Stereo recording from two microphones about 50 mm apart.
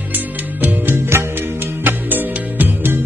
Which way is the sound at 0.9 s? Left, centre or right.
Right.